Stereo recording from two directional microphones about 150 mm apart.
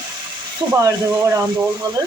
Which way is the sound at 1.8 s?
30° right (ahead or behind).